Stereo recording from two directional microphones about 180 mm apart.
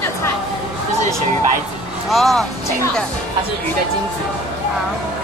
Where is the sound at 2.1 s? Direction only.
Centre (ahead or behind).